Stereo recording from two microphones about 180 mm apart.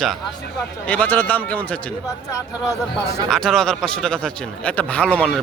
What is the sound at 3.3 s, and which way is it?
Speech, 5° left (ahead or behind).